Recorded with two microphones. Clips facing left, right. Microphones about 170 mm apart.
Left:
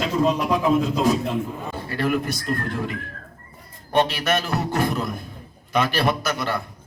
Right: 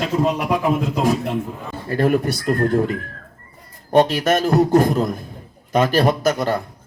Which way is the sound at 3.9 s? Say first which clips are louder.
Right 5 dB; 40° right (ahead or behind).